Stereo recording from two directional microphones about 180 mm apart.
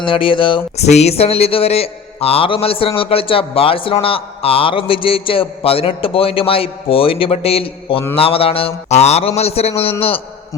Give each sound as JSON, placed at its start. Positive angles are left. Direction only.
{"t": 0.0, "sound": "speech", "side_deg": 30}